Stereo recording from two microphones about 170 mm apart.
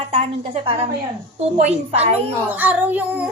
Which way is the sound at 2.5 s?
10° right (ahead or behind).